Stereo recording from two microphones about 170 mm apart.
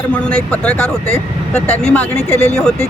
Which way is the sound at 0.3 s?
5° left (ahead or behind).